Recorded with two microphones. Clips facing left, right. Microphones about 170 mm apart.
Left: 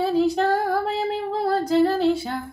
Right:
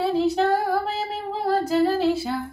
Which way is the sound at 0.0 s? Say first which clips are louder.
Left 1 dB; centre (ahead or behind).